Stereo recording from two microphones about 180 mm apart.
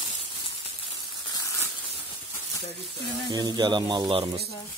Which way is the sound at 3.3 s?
25° right (ahead or behind).